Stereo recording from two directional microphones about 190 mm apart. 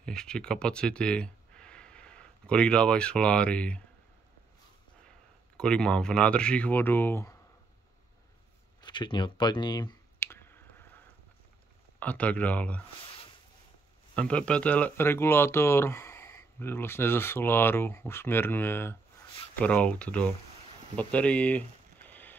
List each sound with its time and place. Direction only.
0.0 s speech: 5° left (ahead or behind)
5.6 s speech: 5° left (ahead or behind)
8.8 s clicking: 25° left (ahead or behind)
12.0 s speech: 5° left (ahead or behind)
14.1 s speech: 5° left (ahead or behind)
20.9 s a sound: 5° left (ahead or behind)